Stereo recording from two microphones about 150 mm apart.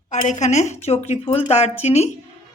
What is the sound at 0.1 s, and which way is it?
Speech, 50° left (ahead or behind).